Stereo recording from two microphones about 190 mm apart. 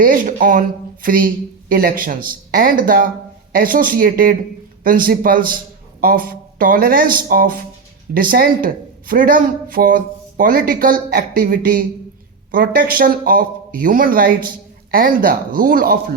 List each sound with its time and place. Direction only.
0.0 s speech: 45° right (ahead or behind)